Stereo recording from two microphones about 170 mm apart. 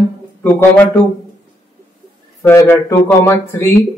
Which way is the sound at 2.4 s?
15° left (ahead or behind).